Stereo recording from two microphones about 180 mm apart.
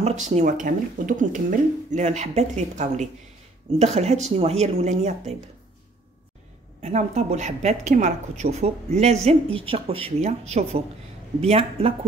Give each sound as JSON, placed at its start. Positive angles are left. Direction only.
{"t": 0.0, "sound": "a woman's voice", "side_deg": -40}
{"t": 6.8, "sound": "a woman's voice", "side_deg": -35}